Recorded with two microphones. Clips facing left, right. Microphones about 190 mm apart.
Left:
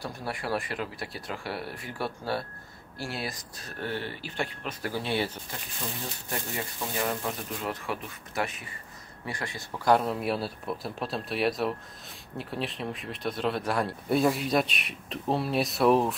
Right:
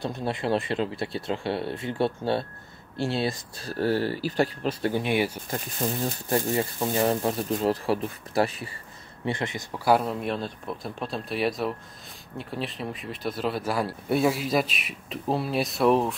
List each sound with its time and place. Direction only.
0.0 s speech: 25° right (ahead or behind); by 4.7 s 40° right (ahead or behind)
4.8 s speech: 15° right (ahead or behind)
5.5 s speech: 45° right (ahead or behind); by 9.8 s 20° right (ahead or behind)
9.8 s speech: centre (ahead or behind)